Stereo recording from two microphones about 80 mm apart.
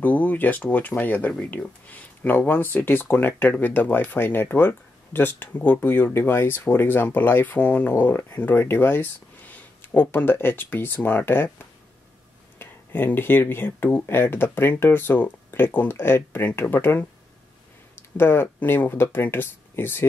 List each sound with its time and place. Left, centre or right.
0.0 s speech: centre
18.1 s speech: left